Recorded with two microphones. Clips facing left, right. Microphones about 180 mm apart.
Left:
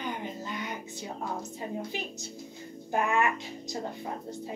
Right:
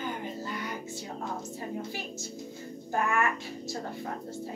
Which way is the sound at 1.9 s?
20° left (ahead or behind).